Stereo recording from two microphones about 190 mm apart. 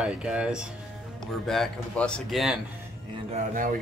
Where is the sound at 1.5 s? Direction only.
5° left (ahead or behind).